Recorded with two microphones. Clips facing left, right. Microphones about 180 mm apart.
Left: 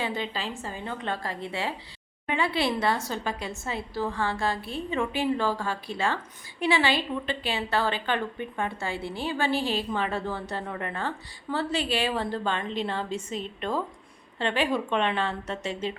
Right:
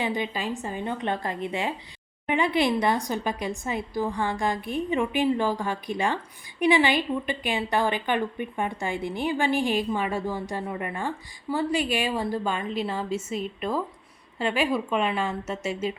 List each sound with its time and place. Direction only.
0.0 s a woman's voice: 15° right (ahead or behind)